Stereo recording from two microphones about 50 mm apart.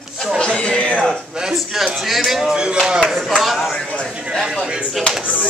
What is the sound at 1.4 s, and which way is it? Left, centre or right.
A man's voice, centre.